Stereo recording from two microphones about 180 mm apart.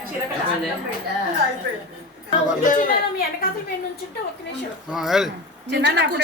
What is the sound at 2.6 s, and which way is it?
Speech, 50° left (ahead or behind).